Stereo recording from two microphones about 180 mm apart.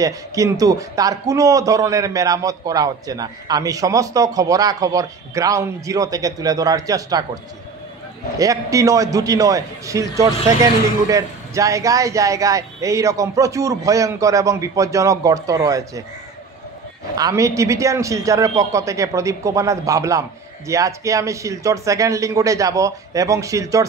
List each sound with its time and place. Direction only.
0.0 s a man's voice: 20° right (ahead or behind)
8.4 s a man's voice: 20° right (ahead or behind)
17.2 s a man's voice: 15° right (ahead or behind)